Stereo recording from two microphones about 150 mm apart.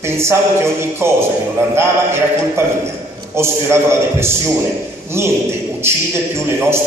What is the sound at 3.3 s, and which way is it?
A man's voice, 15° right (ahead or behind).